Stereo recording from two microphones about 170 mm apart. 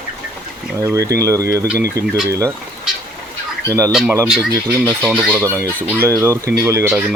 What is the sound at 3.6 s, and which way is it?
Speech, 20° right (ahead or behind).